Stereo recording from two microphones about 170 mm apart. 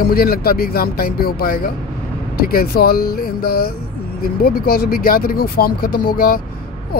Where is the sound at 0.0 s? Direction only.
65° left (ahead or behind).